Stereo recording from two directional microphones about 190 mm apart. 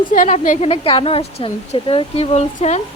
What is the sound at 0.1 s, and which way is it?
A woman's voice, 40° left (ahead or behind).